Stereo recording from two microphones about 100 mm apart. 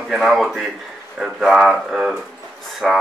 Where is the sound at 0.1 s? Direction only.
Centre (ahead or behind).